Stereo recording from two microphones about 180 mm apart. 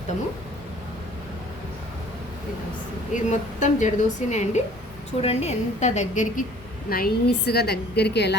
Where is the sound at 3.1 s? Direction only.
40° left (ahead or behind).